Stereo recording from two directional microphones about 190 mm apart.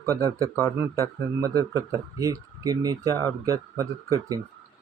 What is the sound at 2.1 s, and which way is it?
A man's voice, 20° right (ahead or behind).